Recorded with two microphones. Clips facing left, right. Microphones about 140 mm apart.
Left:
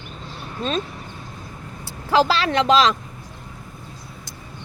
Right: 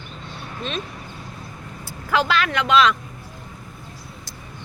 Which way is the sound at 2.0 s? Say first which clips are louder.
Left 3 dB; 30° left (ahead or behind).